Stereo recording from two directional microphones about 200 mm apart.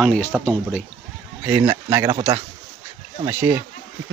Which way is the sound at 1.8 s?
25° right (ahead or behind).